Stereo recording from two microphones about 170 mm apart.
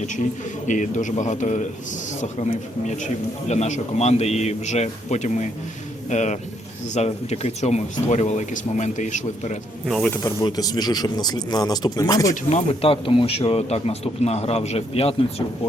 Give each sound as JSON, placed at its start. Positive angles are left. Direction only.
{"t": 0.7, "sound": "a man's voice", "side_deg": 45}
{"t": 9.8, "sound": "speech", "side_deg": 0}
{"t": 10.4, "sound": "speech", "side_deg": 25}
{"t": 12.3, "sound": "a man's voice", "side_deg": 45}